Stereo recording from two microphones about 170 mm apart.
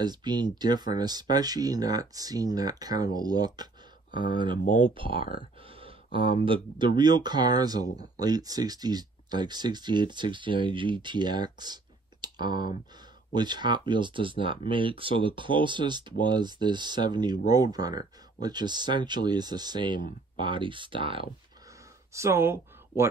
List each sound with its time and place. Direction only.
0.0 s speech: 25° right (ahead or behind)
4.9 s speech: 30° right (ahead or behind)
5.7 s a sound: 35° right (ahead or behind)
6.4 s speech: 30° right (ahead or behind)
22.1 s speech: 15° right (ahead or behind)